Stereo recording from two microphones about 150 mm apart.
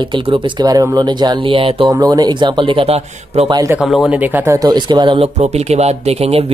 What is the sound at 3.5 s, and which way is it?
Speech, 25° right (ahead or behind).